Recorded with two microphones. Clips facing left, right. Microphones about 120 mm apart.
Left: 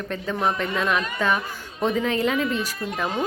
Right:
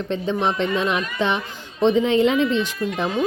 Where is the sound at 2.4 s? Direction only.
40° left (ahead or behind).